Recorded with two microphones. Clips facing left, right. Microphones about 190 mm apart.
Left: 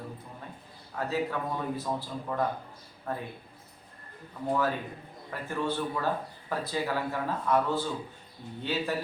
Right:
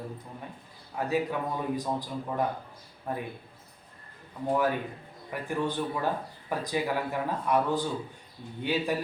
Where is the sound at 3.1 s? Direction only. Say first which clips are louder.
Right 1 dB; 15° right (ahead or behind).